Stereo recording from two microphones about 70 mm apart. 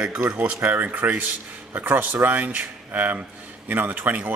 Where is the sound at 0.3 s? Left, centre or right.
Centre.